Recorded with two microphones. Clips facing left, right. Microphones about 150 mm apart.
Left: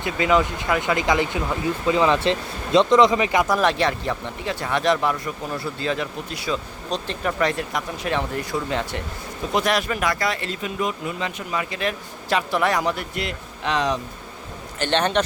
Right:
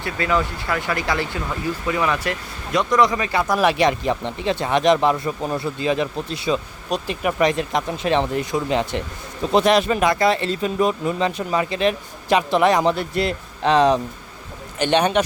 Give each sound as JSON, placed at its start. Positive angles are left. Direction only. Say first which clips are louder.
{"t": 0.0, "sound": "speech", "louder": "left 2 dB", "side_deg": 20}
{"t": 3.5, "sound": "speech", "louder": "right 3 dB", "side_deg": -10}
{"t": 14.8, "sound": "speech", "louder": "right 3 dB", "side_deg": -15}